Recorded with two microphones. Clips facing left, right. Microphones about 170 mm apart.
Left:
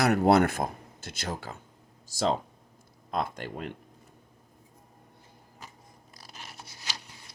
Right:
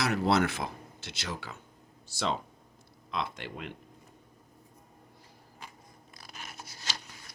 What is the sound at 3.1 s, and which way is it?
Speech, 45° left (ahead or behind).